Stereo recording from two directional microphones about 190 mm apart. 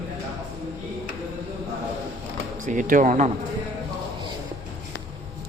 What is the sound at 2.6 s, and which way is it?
Speech, 40° right (ahead or behind).